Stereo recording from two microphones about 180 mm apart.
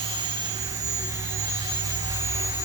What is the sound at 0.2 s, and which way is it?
Jet engine, 25° right (ahead or behind).